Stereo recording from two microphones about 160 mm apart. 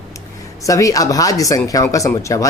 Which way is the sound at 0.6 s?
20° left (ahead or behind).